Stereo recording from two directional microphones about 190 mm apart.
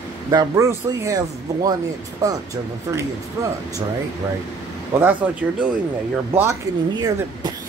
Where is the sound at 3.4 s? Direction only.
20° right (ahead or behind).